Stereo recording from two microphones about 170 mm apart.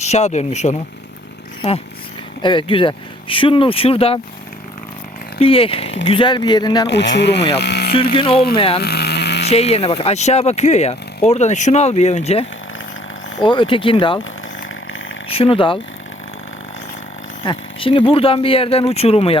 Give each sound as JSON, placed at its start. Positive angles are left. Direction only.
{"t": 0.0, "sound": "speech", "side_deg": 40}
{"t": 2.4, "sound": "speech", "side_deg": 30}
{"t": 5.4, "sound": "speech", "side_deg": 35}
{"t": 6.8, "sound": "speech", "side_deg": 90}
{"t": 7.5, "sound": "speech", "side_deg": 75}
{"t": 8.1, "sound": "speech", "side_deg": 30}
{"t": 8.8, "sound": "a sound", "side_deg": 70}
{"t": 9.5, "sound": "speech", "side_deg": 35}
{"t": 15.3, "sound": "speech", "side_deg": 35}
{"t": 17.4, "sound": "speech", "side_deg": 30}